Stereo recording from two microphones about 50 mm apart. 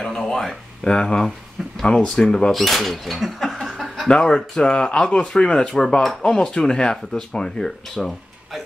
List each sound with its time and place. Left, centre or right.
0.0 s a sound: centre
0.8 s speech: centre
1.6 s speech: centre
2.1 s speech: centre
2.5 s a sound: centre
4.1 s speech: centre